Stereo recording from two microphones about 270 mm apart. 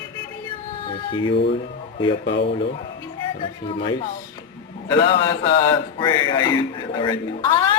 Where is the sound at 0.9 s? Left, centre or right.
Centre.